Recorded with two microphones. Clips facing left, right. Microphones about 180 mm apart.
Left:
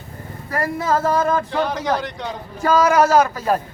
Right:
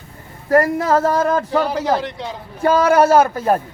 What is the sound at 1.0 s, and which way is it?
Male singing, 40° right (ahead or behind).